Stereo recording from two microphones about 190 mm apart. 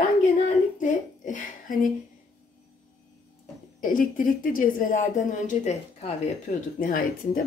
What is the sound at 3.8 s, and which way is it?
Speech, 45° left (ahead or behind).